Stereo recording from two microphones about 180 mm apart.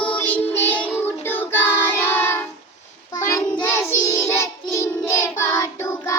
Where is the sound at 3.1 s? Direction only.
15° left (ahead or behind).